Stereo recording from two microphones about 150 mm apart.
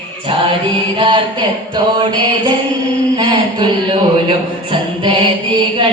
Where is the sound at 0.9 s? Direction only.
30° right (ahead or behind).